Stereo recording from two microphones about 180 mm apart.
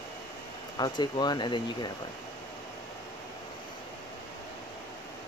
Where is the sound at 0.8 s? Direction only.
25° left (ahead or behind).